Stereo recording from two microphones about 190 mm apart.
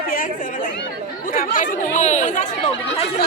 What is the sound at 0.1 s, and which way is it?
Speech, 45° left (ahead or behind).